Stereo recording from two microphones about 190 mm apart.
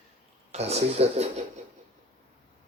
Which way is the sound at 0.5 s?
35° right (ahead or behind).